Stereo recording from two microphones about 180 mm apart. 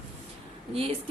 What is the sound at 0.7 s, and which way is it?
Speech, 30° right (ahead or behind).